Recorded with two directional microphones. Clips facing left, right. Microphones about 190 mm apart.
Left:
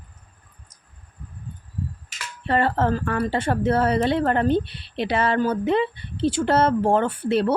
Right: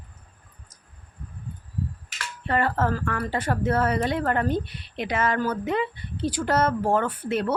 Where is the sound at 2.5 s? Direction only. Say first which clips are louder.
Left 3 dB; 30° left (ahead or behind).